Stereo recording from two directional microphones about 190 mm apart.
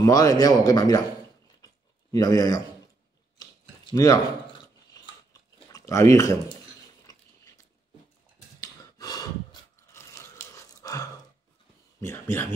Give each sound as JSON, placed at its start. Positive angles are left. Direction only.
{"t": 0.0, "sound": "a man's voice", "side_deg": 20}
{"t": 2.1, "sound": "a man's voice", "side_deg": 20}
{"t": 3.3, "sound": "a sound", "side_deg": 20}
{"t": 5.7, "sound": "speech", "side_deg": 15}
{"t": 8.5, "sound": "a sound", "side_deg": 20}
{"t": 12.0, "sound": "speech", "side_deg": 10}